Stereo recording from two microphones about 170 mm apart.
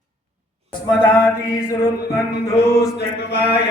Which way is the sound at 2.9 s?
75° left (ahead or behind).